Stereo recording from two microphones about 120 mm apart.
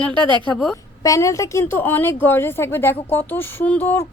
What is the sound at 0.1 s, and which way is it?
Speech, 40° right (ahead or behind).